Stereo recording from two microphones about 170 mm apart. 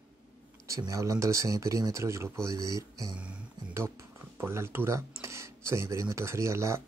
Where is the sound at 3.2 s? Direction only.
5° right (ahead or behind).